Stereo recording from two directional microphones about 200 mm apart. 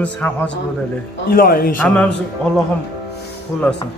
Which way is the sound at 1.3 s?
45° left (ahead or behind).